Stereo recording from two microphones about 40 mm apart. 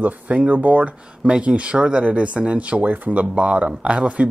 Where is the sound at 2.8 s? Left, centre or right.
Right.